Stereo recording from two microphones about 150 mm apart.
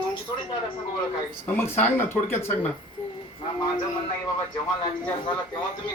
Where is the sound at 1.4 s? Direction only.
15° left (ahead or behind).